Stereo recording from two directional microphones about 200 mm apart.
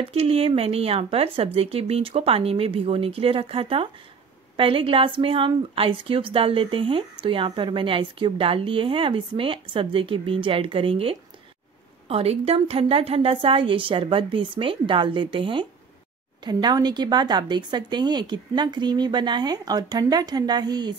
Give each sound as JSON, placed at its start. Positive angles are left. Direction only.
{"t": 0.1, "sound": "a woman's voice", "side_deg": -30}